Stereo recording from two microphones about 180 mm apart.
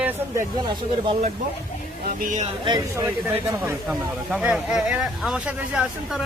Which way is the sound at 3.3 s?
10° right (ahead or behind).